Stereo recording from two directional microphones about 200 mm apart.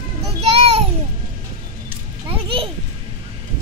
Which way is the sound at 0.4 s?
30° right (ahead or behind).